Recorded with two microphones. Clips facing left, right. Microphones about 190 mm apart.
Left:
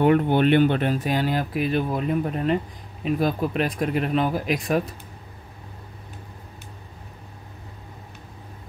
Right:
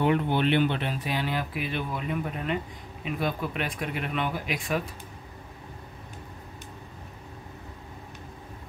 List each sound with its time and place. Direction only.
0.0 s speech: 50° left (ahead or behind)